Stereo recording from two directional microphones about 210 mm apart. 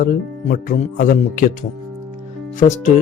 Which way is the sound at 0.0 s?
40° left (ahead or behind).